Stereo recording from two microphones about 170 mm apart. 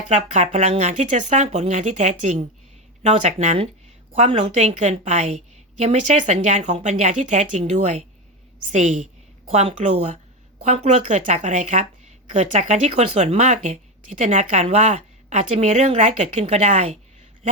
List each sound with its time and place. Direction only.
0.1 s a woman's voice: 45° right (ahead or behind)